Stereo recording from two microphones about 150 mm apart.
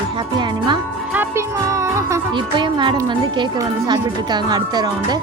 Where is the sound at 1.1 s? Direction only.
15° right (ahead or behind).